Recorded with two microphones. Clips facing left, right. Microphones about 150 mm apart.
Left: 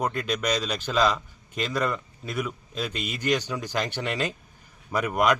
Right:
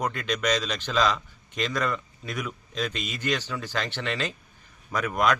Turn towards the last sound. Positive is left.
turn(degrees=10)  # may be behind; listen again after turning